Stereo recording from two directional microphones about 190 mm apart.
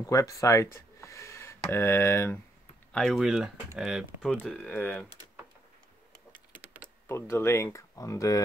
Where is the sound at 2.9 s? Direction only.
Centre (ahead or behind).